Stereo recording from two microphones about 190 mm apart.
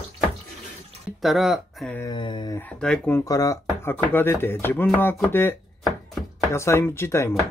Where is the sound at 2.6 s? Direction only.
5° left (ahead or behind).